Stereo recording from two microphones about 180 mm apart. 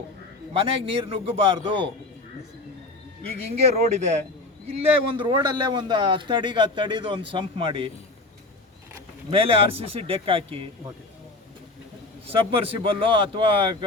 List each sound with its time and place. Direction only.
0.5 s a man's voice: 30° right (ahead or behind)
3.5 s a man's voice: 35° right (ahead or behind)
4.7 s a man's voice: 25° right (ahead or behind)
9.3 s a man's voice: 30° right (ahead or behind)
12.3 s a man's voice: 30° right (ahead or behind)